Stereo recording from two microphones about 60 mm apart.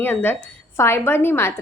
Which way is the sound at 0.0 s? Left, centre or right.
Left.